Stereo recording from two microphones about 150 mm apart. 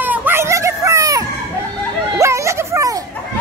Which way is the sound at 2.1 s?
20° right (ahead or behind).